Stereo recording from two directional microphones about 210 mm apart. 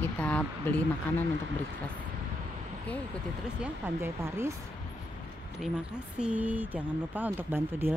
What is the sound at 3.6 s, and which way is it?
Speech, 10° right (ahead or behind).